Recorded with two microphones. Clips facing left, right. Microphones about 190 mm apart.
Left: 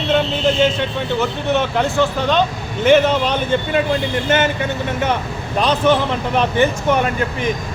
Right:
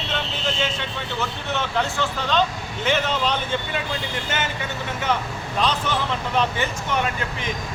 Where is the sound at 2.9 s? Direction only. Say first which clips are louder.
Left 10 dB; 55° left (ahead or behind).